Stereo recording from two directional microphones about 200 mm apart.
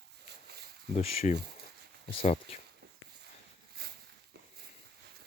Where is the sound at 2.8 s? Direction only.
50° right (ahead or behind).